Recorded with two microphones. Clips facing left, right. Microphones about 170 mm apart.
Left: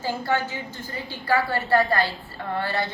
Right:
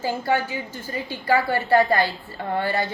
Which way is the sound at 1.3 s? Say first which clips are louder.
Right 2 dB; 20° right (ahead or behind).